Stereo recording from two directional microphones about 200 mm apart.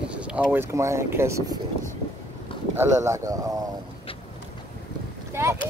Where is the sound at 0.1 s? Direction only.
5° right (ahead or behind).